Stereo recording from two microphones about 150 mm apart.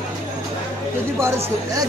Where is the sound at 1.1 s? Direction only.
20° right (ahead or behind).